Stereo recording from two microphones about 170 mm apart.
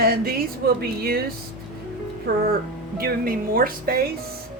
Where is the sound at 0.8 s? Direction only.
60° right (ahead or behind).